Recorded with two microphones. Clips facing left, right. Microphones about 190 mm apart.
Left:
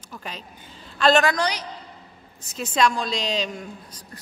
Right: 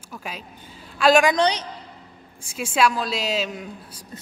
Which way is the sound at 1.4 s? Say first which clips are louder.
Right 5 dB; 30° right (ahead or behind).